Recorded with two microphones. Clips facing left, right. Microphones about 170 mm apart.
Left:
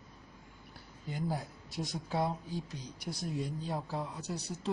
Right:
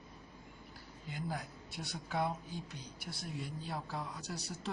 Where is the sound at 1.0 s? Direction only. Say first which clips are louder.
Left 5 dB; 40° left (ahead or behind).